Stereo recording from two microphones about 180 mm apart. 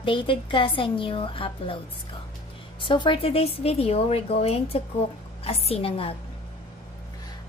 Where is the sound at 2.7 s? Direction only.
25° left (ahead or behind).